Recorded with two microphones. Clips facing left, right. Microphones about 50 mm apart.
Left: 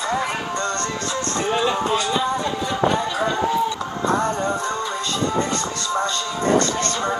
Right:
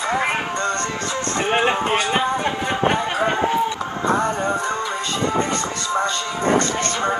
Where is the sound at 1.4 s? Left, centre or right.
Right.